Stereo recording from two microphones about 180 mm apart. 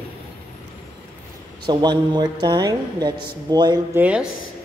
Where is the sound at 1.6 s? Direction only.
25° right (ahead or behind).